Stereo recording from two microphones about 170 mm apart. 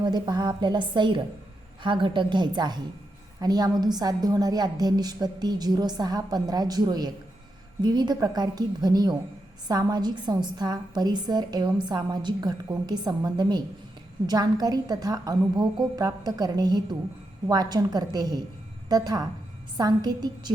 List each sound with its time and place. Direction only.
0.0 s a woman's voice: 25° right (ahead or behind)